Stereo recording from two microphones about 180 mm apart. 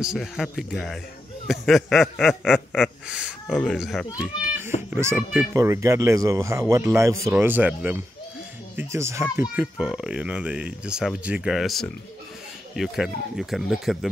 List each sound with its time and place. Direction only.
0.0 s speech: centre (ahead or behind)
4.9 s speech: 10° right (ahead or behind)